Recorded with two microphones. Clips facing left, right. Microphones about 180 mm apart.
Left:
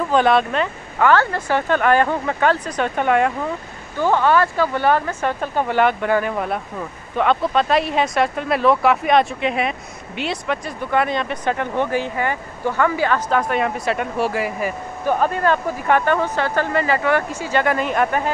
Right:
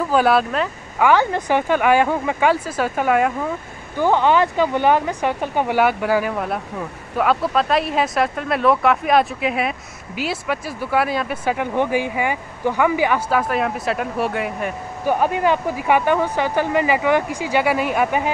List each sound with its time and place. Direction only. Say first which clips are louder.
0.1 s speech: left 1 dB; 5° right (ahead or behind)
3.9 s speech: even; 15° right (ahead or behind); by 14.8 s centre (ahead or behind)
15.0 s speech: even; 10° right (ahead or behind)